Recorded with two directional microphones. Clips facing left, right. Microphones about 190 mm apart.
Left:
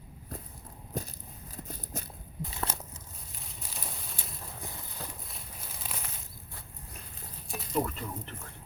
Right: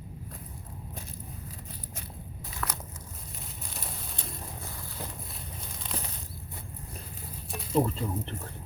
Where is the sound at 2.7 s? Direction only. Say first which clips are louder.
Even; 25° left (ahead or behind).